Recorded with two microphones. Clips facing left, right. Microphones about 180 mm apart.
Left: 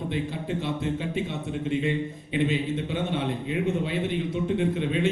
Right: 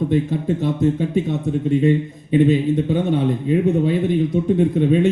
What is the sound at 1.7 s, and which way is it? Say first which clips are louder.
A man's voice: right 10 dB; 40° right (ahead or behind).